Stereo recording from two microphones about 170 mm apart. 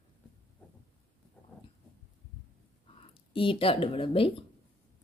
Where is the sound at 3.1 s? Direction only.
30° left (ahead or behind).